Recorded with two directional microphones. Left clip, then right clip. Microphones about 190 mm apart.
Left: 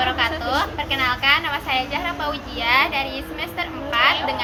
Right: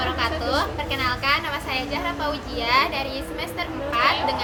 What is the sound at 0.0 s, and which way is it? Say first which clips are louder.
A woman's voice: left 3 dB; 15° right (ahead or behind).